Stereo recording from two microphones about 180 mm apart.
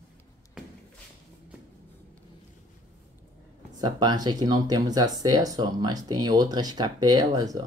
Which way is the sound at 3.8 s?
25° right (ahead or behind).